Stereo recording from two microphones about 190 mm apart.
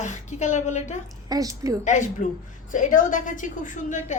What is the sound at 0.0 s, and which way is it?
Speech, 40° left (ahead or behind).